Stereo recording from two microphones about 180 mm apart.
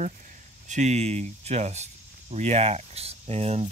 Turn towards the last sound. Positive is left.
turn(degrees=-35)  # may be behind; listen again after turning